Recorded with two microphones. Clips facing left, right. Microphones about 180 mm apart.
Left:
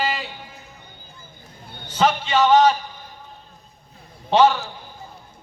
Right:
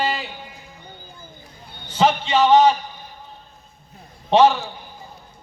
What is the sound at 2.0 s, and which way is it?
Speech, 20° right (ahead or behind).